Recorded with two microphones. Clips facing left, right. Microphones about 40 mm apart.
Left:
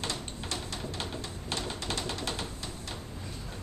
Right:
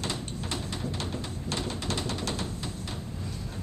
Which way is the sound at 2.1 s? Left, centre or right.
Centre.